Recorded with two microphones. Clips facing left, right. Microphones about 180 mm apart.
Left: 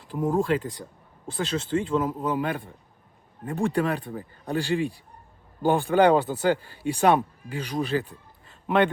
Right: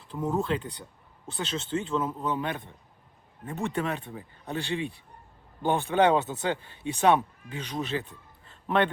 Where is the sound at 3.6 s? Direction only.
35° left (ahead or behind).